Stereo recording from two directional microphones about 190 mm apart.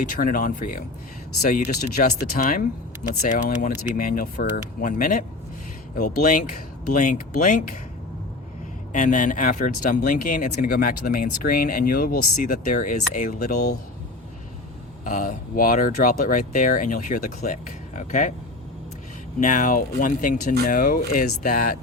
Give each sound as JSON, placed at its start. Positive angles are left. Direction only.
{"t": 0.0, "sound": "speech", "side_deg": 45}
{"t": 8.9, "sound": "speech", "side_deg": 45}
{"t": 15.0, "sound": "speech", "side_deg": 40}
{"t": 19.4, "sound": "speech", "side_deg": 40}